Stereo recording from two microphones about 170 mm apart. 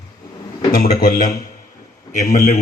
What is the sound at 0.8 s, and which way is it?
A man's voice, 50° left (ahead or behind).